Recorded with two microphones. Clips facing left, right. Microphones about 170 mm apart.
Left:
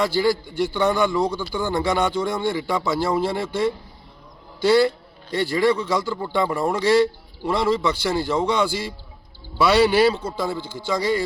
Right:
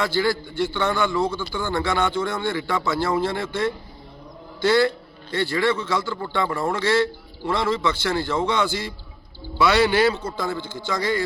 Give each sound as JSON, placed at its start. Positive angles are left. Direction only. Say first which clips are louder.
{"t": 0.0, "sound": "a man's voice", "louder": "left 2 dB", "side_deg": 10}
{"t": 7.7, "sound": "a man's voice", "louder": "left 3 dB", "side_deg": 35}
{"t": 8.0, "sound": "a man's voice", "louder": "left 1 dB", "side_deg": 10}